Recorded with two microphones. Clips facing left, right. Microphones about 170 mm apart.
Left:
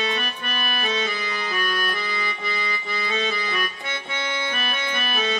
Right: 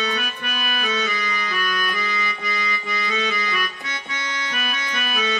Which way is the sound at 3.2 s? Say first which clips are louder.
Even; 30° left (ahead or behind).